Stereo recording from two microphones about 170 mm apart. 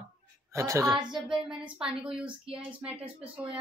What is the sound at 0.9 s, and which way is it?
Speech, 5° right (ahead or behind).